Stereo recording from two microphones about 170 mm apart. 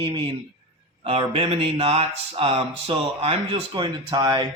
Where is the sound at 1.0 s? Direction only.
35° right (ahead or behind).